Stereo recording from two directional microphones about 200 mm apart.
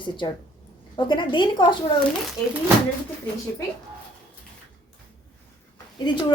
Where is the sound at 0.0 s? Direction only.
25° left (ahead or behind).